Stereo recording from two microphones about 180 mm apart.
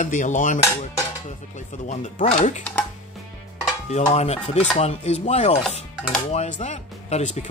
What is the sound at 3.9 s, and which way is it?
Speech, 35° left (ahead or behind).